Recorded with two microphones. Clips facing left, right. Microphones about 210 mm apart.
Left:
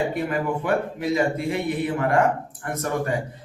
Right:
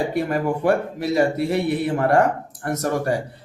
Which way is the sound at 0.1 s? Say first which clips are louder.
Right 3 dB; 40° right (ahead or behind).